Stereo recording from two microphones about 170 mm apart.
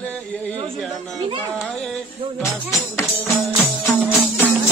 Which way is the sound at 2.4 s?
20° left (ahead or behind).